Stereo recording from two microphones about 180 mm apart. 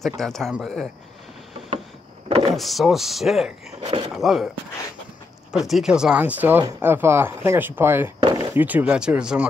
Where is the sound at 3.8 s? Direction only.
30° right (ahead or behind).